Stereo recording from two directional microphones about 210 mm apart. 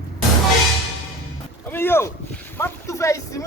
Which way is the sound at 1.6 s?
10° left (ahead or behind).